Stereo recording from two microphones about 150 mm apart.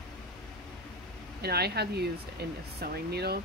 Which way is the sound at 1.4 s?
90° right.